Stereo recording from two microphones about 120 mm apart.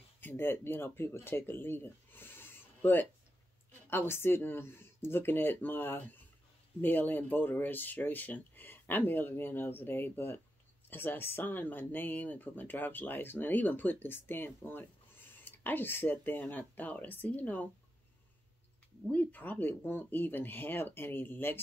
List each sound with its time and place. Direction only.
0.2 s speech: 20° left (ahead or behind)
19.0 s speech: 15° left (ahead or behind)